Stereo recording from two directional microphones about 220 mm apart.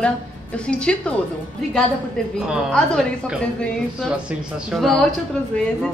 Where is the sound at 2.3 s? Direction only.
Centre (ahead or behind).